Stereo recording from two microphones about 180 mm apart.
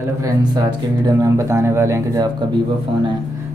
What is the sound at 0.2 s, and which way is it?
Speech, 25° right (ahead or behind).